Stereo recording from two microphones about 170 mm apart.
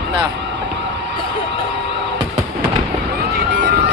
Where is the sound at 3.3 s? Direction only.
90° right.